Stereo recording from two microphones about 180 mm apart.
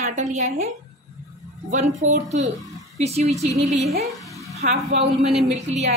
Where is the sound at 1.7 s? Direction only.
40° right (ahead or behind).